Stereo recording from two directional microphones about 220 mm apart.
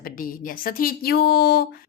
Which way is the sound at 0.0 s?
40° left (ahead or behind).